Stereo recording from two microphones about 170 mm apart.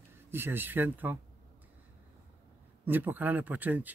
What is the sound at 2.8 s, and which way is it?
Speech, 10° right (ahead or behind).